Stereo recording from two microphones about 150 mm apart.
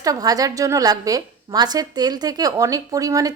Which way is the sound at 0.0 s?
25° right (ahead or behind).